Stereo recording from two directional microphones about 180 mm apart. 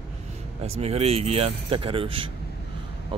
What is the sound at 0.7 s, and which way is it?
A man's voice, 35° right (ahead or behind).